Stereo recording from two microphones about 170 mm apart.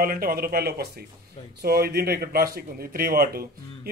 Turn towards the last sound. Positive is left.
turn(degrees=-60)  # may be behind; listen again after turning